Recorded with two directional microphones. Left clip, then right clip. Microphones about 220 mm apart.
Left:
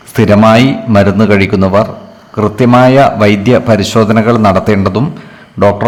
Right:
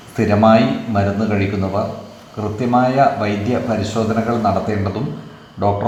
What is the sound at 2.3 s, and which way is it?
A man's voice, 45° left (ahead or behind).